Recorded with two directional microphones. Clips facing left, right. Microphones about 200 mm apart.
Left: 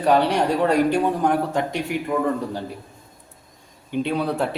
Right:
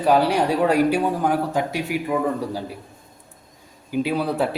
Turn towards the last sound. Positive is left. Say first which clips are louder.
# right 1 dB
turn(degrees=-5)  # may be behind; listen again after turning